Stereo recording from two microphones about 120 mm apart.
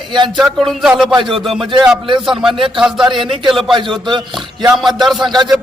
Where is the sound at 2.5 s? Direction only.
45° right (ahead or behind).